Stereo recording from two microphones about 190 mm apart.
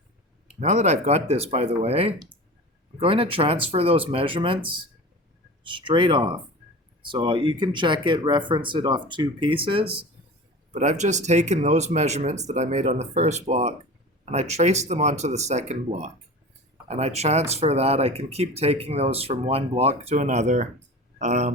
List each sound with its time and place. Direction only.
0.4 s speech: 40° right (ahead or behind)
10.8 s speech: 40° right (ahead or behind)